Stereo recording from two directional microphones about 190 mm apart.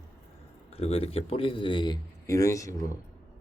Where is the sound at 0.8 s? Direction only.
30° left (ahead or behind); by 2.7 s 15° left (ahead or behind).